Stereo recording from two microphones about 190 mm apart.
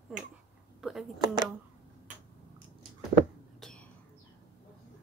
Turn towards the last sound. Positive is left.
turn(degrees=5)  # may be behind; listen again after turning